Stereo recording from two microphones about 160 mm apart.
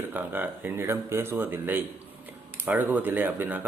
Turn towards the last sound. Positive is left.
turn(degrees=-10)  # may be behind; listen again after turning